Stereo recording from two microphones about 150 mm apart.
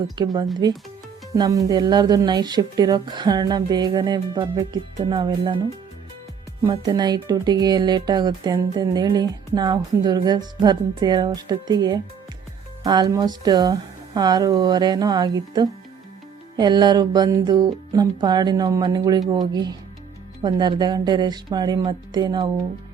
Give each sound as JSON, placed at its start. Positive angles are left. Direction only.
{"t": 0.2, "sound": "speech", "side_deg": -30}
{"t": 6.7, "sound": "speech", "side_deg": -30}